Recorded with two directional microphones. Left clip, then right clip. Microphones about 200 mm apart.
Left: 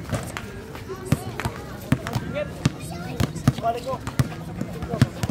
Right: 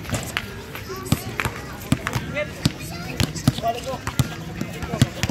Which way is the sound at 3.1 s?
35° left (ahead or behind).